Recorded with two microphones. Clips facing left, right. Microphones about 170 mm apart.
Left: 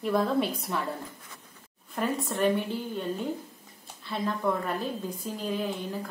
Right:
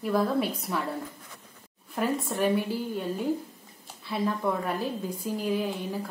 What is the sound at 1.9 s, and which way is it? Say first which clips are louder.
A woman's voice: right 1 dB; 5° right (ahead or behind).